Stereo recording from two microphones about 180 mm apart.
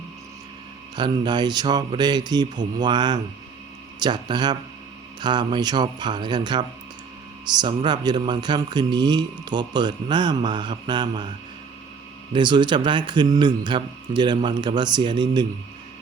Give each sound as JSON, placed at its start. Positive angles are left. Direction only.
{"t": 0.9, "sound": "a man's voice", "side_deg": -25}
{"t": 12.3, "sound": "a man's voice", "side_deg": -25}